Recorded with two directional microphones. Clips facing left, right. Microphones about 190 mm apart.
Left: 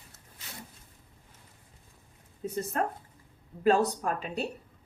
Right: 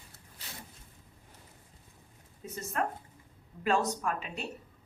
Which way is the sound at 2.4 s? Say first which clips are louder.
Left 4 dB; 35° left (ahead or behind).